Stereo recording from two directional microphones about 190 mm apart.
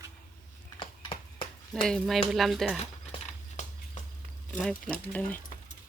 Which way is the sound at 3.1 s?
40° left (ahead or behind).